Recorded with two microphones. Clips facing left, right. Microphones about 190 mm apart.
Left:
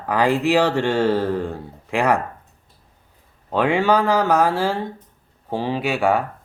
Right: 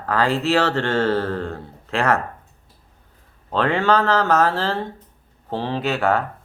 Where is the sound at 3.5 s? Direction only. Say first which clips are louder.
Left 1 dB; 10° left (ahead or behind).